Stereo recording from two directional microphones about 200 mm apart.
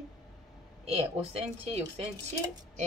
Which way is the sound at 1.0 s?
30° right (ahead or behind).